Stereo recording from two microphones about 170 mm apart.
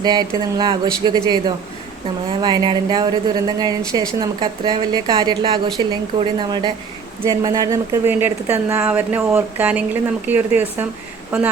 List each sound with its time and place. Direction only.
0.0 s speech: 25° right (ahead or behind)